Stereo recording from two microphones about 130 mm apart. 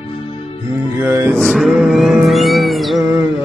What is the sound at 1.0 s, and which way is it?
Mantra, 20° right (ahead or behind).